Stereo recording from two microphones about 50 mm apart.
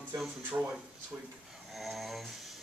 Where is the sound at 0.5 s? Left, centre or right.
Right.